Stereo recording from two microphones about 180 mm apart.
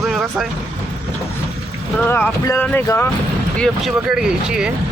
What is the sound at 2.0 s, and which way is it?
Speech, 10° left (ahead or behind).